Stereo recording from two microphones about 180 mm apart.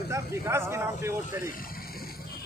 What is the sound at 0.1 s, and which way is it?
Speech, 15° right (ahead or behind).